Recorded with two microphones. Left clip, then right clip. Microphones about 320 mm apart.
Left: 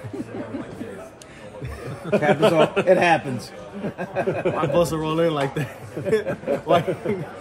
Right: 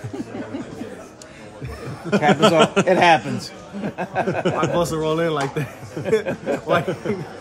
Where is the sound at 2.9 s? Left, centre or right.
Centre.